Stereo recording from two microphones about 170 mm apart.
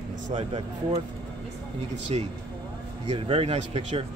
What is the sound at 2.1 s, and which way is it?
Speech, 35° right (ahead or behind).